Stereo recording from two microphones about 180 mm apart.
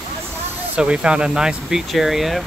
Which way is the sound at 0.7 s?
5° right (ahead or behind).